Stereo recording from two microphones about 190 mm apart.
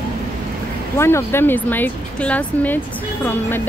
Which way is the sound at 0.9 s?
15° left (ahead or behind).